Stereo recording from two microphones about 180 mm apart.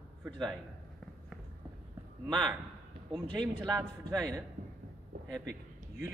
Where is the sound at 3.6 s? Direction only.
20° right (ahead or behind).